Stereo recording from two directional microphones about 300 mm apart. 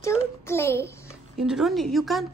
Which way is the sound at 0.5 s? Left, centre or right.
Centre.